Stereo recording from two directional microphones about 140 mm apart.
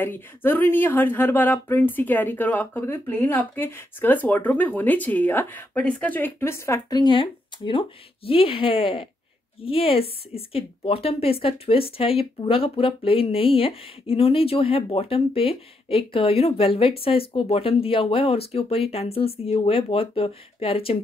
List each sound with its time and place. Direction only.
0.0 s speech: 15° left (ahead or behind)
7.0 s a woman's voice: 35° left (ahead or behind)